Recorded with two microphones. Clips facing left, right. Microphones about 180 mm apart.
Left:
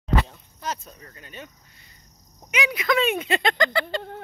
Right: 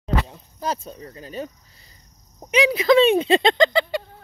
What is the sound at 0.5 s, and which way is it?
Speech, 30° right (ahead or behind).